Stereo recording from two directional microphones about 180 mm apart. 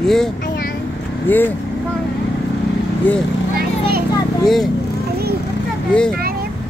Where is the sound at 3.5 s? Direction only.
60° right (ahead or behind).